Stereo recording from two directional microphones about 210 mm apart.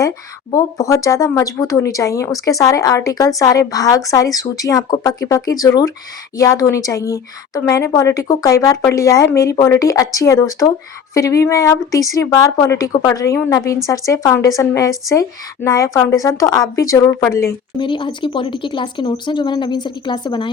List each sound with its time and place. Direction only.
0.5 s a woman's voice: 15° left (ahead or behind)